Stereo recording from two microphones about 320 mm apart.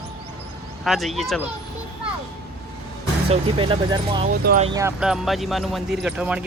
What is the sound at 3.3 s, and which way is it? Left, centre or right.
Speech, centre.